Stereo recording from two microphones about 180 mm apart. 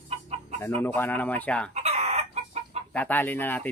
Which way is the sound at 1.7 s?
35° right (ahead or behind).